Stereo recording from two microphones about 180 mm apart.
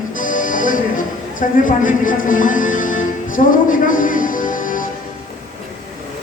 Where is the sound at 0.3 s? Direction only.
45° left (ahead or behind).